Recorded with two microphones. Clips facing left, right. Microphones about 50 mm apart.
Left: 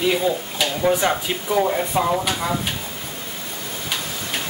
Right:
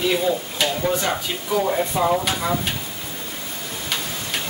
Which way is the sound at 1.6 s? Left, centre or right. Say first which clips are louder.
Even; centre.